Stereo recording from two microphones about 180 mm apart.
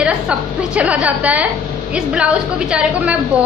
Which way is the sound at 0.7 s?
5° right (ahead or behind).